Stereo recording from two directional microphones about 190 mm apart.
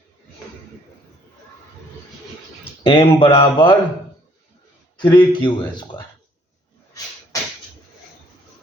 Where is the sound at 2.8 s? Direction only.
25° left (ahead or behind).